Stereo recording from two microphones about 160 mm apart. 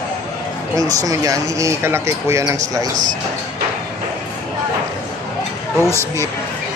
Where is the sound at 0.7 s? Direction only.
20° right (ahead or behind).